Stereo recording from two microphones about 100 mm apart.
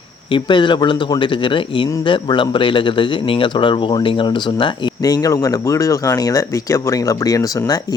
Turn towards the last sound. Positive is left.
turn(degrees=35)  # may be behind; listen again after turning